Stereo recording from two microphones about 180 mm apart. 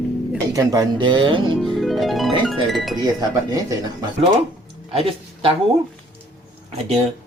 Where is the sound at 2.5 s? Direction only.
Centre (ahead or behind).